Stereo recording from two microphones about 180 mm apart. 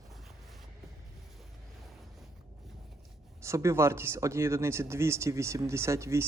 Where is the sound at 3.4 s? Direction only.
15° right (ahead or behind).